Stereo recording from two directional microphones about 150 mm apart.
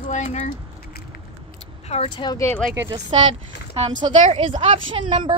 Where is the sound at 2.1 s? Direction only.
30° left (ahead or behind).